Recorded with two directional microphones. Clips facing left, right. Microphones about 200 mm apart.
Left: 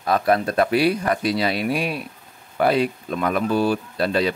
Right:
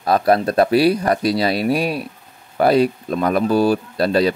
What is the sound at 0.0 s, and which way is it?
Speech, 35° right (ahead or behind).